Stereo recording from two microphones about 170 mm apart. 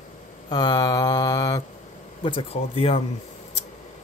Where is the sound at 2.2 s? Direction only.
30° left (ahead or behind).